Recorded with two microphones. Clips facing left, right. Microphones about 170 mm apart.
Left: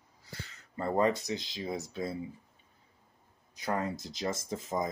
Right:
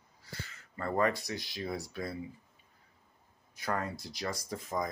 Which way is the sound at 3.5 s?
20° left (ahead or behind).